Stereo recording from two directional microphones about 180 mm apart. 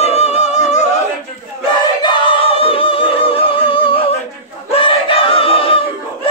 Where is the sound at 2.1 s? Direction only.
30° left (ahead or behind).